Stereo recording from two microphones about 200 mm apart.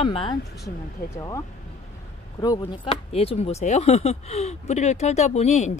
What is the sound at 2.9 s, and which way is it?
Speech, 30° left (ahead or behind).